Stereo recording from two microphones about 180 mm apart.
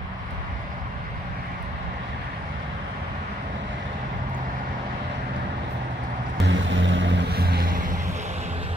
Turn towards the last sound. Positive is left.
turn(degrees=-55)  # may be behind; listen again after turning